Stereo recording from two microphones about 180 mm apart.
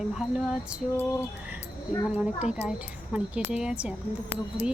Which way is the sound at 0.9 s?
10° left (ahead or behind).